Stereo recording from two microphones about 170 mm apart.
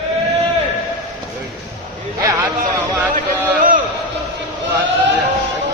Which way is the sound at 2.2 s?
20° right (ahead or behind).